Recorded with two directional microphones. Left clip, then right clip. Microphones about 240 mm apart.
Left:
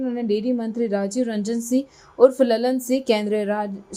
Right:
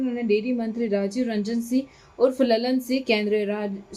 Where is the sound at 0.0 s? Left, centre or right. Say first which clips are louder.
Even; centre.